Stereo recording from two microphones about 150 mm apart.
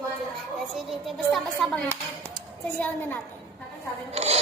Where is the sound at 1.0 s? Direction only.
Centre (ahead or behind).